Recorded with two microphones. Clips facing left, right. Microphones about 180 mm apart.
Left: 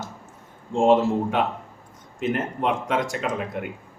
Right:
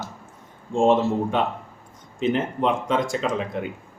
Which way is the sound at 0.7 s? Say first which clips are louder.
Left 1 dB; 10° left (ahead or behind).